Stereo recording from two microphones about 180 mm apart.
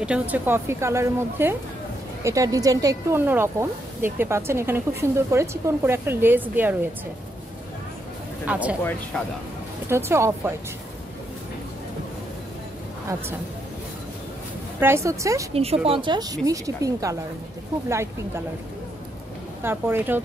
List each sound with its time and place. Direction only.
0.0 s speech: 5° right (ahead or behind)
8.5 s speech: 5° right (ahead or behind)
9.8 s speech: 15° right (ahead or behind)
14.8 s speech: 15° right (ahead or behind)
15.5 s speech: 35° right (ahead or behind); by 18.4 s 15° right (ahead or behind)
19.6 s speech: 10° right (ahead or behind)